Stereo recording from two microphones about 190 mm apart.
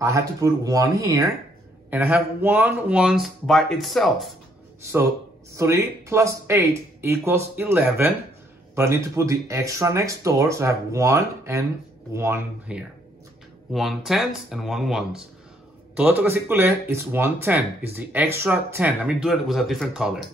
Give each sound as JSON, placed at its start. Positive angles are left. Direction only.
{"t": 0.0, "sound": "speech", "side_deg": -15}
{"t": 1.9, "sound": "speech", "side_deg": -5}
{"t": 5.6, "sound": "speech", "side_deg": -15}